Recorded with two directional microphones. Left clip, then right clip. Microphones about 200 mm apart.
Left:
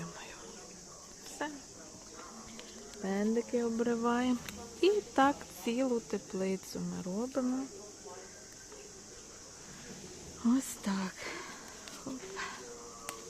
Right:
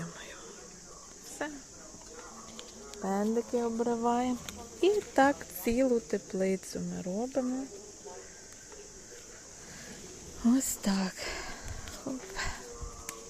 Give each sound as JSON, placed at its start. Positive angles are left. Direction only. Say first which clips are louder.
{"t": 1.4, "sound": "speech", "louder": "right 1 dB", "side_deg": -5}
{"t": 3.0, "sound": "speech", "louder": "right 2 dB", "side_deg": 10}
{"t": 10.4, "sound": "speech", "louder": "right 4 dB", "side_deg": -15}